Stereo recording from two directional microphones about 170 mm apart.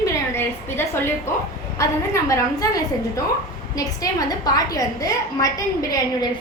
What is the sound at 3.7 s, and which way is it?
A woman's voice, 20° left (ahead or behind).